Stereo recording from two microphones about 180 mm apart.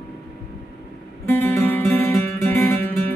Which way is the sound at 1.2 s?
15° left (ahead or behind).